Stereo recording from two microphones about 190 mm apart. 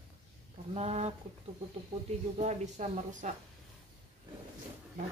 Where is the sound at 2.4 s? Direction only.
35° right (ahead or behind).